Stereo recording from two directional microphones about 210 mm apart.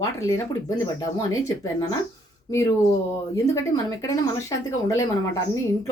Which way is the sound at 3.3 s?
15° left (ahead or behind).